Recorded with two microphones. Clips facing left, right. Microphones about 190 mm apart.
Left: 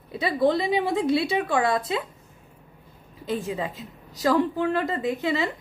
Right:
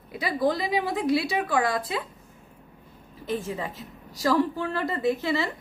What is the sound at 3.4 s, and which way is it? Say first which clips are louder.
A woman's voice: left 3 dB; 15° left (ahead or behind).